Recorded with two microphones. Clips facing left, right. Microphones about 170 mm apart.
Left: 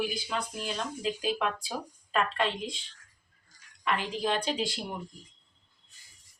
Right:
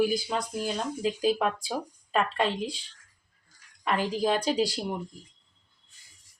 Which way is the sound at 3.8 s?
40° right (ahead or behind).